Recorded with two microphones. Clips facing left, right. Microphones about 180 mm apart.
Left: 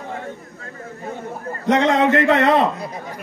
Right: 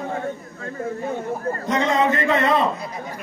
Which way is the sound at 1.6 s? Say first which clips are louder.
Left 5 dB; 70° left (ahead or behind).